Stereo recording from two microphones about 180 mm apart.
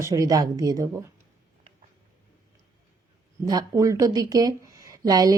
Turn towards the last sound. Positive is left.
turn(degrees=-20)  # may be behind; listen again after turning